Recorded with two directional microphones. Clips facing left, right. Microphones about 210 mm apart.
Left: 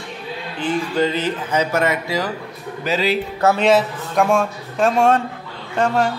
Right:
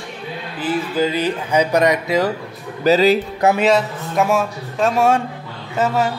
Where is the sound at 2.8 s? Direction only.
40° right (ahead or behind).